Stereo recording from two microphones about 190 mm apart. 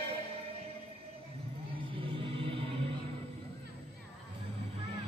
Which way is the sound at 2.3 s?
30° right (ahead or behind).